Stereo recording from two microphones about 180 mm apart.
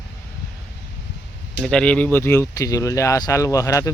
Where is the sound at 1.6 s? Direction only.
5° left (ahead or behind).